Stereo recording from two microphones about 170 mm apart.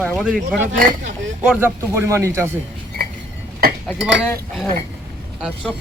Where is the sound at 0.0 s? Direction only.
Centre (ahead or behind).